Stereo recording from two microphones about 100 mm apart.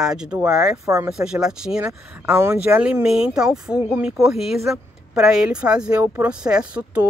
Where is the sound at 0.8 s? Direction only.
35° right (ahead or behind).